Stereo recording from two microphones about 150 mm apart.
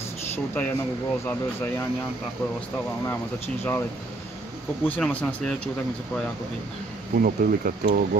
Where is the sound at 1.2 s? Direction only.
15° left (ahead or behind).